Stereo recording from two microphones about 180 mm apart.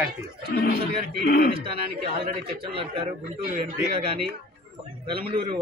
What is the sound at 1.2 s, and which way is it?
Speech, 55° left (ahead or behind).